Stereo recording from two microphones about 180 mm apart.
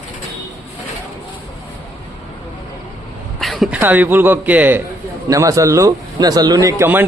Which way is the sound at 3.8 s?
10° right (ahead or behind).